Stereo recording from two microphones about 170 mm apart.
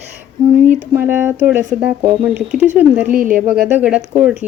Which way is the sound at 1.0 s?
15° right (ahead or behind).